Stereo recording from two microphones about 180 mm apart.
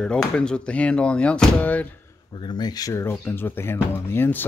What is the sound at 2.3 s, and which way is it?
Speech, 25° left (ahead or behind).